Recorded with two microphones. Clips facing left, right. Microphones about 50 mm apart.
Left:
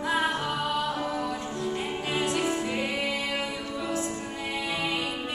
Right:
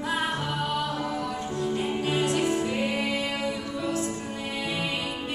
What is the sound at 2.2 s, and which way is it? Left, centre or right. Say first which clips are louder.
Music: right 1 dB; left.